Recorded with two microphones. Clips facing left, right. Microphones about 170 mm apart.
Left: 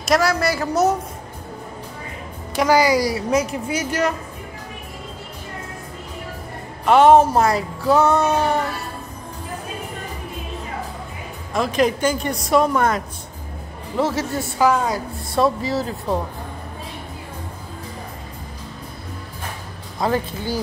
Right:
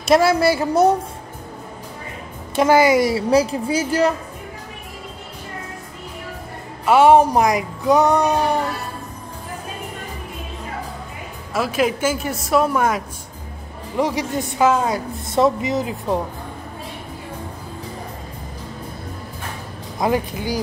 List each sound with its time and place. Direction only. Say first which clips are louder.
0.0 s a woman's voice: right 4 dB; 25° right (ahead or behind)
2.5 s a woman's voice: right 2 dB; 25° right (ahead or behind)
6.9 s speech: even; 10° right (ahead or behind)
11.5 s speech: left 1 dB; 5° right (ahead or behind)
20.0 s speech: right 1 dB; 15° right (ahead or behind)